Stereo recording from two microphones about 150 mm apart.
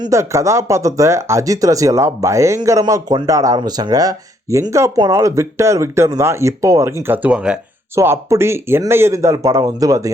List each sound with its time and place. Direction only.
0.0 s speech: 20° right (ahead or behind)
7.1 s speech: 10° right (ahead or behind)
7.9 s speech: 15° right (ahead or behind)